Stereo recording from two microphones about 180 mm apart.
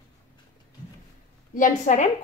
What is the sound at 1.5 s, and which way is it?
Speech, 45° left (ahead or behind).